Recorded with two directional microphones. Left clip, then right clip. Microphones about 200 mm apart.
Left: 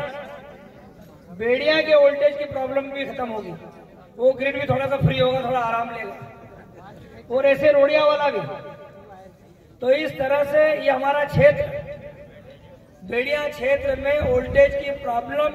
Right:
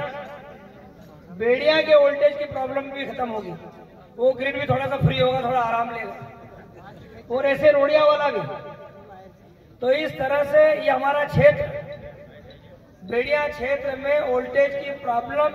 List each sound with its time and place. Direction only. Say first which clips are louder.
0.0 s a sound: even; 50° left (ahead or behind)
1.4 s a man's voice: even; 50° left (ahead or behind)
9.8 s a man's voice: left 1 dB; 50° left (ahead or behind)
13.1 s a man's voice: right 1 dB; 50° left (ahead or behind)